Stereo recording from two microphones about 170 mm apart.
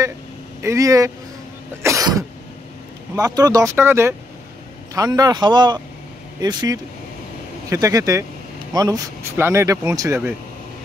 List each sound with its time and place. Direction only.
0.6 s a man's voice: 20° right (ahead or behind)